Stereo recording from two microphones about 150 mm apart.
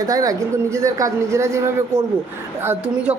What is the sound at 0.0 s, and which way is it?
Speech, 25° right (ahead or behind).